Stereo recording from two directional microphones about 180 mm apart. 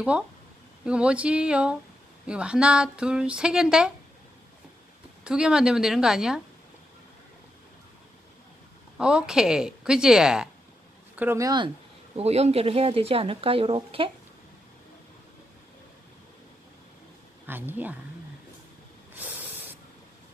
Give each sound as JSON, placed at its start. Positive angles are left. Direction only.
{"t": 0.8, "sound": "speech", "side_deg": -5}
{"t": 5.2, "sound": "speech", "side_deg": -5}
{"t": 8.9, "sound": "speech", "side_deg": -5}
{"t": 11.1, "sound": "speech", "side_deg": -15}
{"t": 12.2, "sound": "speech", "side_deg": -35}
{"t": 17.5, "sound": "speech", "side_deg": -10}
{"t": 19.1, "sound": "spray", "side_deg": -10}